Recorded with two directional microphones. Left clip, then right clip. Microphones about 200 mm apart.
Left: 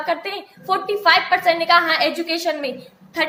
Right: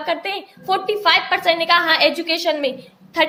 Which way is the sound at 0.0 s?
35° right (ahead or behind).